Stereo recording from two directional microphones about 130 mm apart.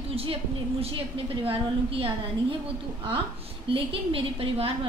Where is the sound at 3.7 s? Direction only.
45° right (ahead or behind).